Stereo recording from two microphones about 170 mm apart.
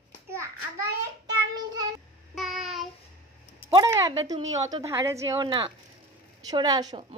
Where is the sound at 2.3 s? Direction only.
Centre (ahead or behind).